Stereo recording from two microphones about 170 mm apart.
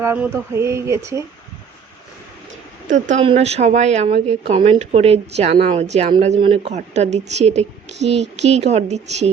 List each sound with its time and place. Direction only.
0.0 s speech: 15° right (ahead or behind)
2.9 s speech: 45° right (ahead or behind)